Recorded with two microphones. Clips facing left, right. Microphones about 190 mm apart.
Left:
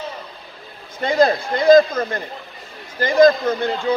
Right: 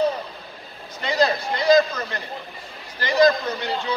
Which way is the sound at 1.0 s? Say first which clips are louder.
Left 5 dB; 50° left (ahead or behind).